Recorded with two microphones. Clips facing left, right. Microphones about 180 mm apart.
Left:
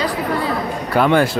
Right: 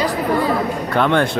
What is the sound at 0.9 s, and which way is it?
Speech, 5° left (ahead or behind).